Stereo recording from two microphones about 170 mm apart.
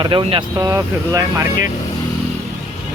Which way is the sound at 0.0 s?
30° right (ahead or behind).